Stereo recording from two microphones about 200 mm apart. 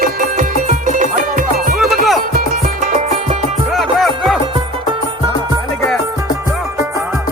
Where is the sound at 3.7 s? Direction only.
Centre (ahead or behind).